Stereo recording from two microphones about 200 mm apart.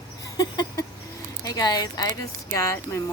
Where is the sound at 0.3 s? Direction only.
20° left (ahead or behind).